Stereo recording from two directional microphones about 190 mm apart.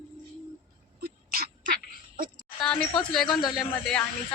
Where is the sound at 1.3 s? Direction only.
45° right (ahead or behind).